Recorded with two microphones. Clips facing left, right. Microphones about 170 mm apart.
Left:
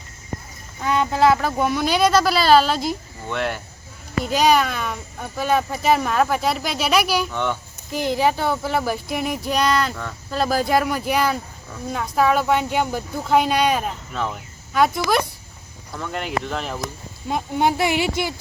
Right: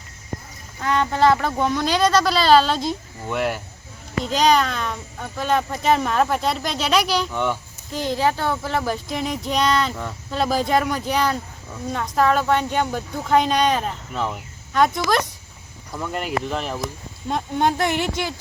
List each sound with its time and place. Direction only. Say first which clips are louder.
0.8 s speech: left 1 dB; 10° left (ahead or behind)
3.2 s speech: right 2 dB; 5° right (ahead or behind)
4.2 s speech: left 1 dB; 10° left (ahead or behind)
7.3 s speech: right 1 dB; 5° right (ahead or behind)
7.9 s speech: left 2 dB; 15° left (ahead or behind)
9.9 s speech: right 1 dB; 15° right (ahead or behind)
10.3 s speech: left 1 dB; centre (ahead or behind)
14.1 s speech: right 1 dB; 10° right (ahead or behind)
14.7 s speech: even; 5° left (ahead or behind)